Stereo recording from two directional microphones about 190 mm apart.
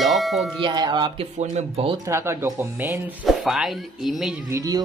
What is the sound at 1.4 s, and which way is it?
Speech, 35° right (ahead or behind).